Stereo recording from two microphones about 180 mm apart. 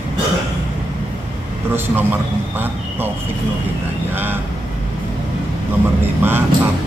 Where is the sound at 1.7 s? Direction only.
10° right (ahead or behind).